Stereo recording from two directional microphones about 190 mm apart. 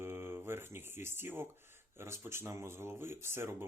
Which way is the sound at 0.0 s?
10° right (ahead or behind).